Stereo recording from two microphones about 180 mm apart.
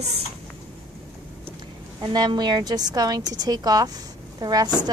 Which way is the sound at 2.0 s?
25° right (ahead or behind).